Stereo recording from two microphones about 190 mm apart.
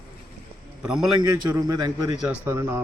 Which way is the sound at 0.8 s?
5° right (ahead or behind).